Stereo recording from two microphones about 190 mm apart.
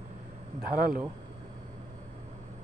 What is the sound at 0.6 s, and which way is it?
Speech, 50° right (ahead or behind).